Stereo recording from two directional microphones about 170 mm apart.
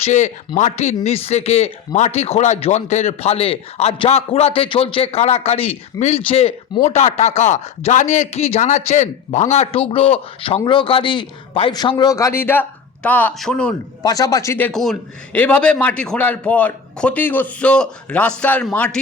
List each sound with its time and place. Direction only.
0.0 s a man's voice: 45° left (ahead or behind); by 13.7 s 5° left (ahead or behind)
14.0 s a man's voice: 20° left (ahead or behind)
14.7 s a man's voice: centre (ahead or behind)